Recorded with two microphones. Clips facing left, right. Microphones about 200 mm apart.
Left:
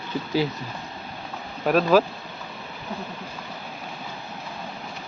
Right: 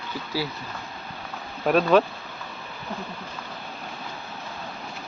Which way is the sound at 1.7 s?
Centre (ahead or behind).